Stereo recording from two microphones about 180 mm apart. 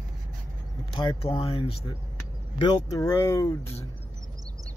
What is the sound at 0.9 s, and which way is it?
Speech, 30° left (ahead or behind).